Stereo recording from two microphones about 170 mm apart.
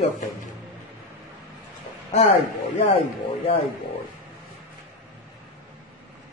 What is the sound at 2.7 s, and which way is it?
Speech, 35° left (ahead or behind).